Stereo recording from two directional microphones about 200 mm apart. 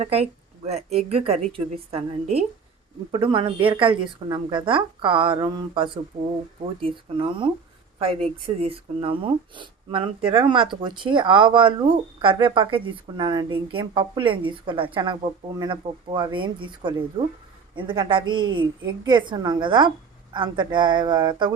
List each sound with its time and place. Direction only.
0.0 s speech: 30° right (ahead or behind)
8.6 s speech: 30° right (ahead or behind)